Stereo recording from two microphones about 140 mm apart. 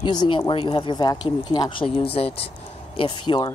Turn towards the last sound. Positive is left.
turn(degrees=35)  # may be behind; listen again after turning